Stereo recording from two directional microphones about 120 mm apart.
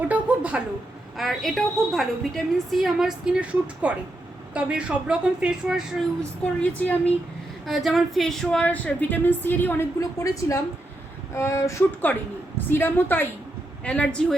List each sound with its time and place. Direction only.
0.1 s a sound: 10° right (ahead or behind)
1.1 s a woman's voice: centre (ahead or behind)
6.4 s speech: 10° left (ahead or behind)
7.7 s speech: centre (ahead or behind); by 9.8 s 15° left (ahead or behind)
10.0 s a woman's voice: 25° left (ahead or behind)
12.1 s speech: 15° left (ahead or behind)